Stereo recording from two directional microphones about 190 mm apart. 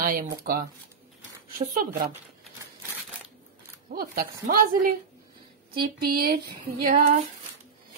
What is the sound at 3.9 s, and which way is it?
A woman's voice, 50° right (ahead or behind).